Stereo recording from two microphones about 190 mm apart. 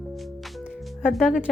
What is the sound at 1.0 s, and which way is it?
Speech, centre (ahead or behind).